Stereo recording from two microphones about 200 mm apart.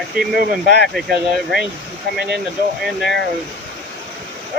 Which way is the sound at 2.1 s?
55° right (ahead or behind).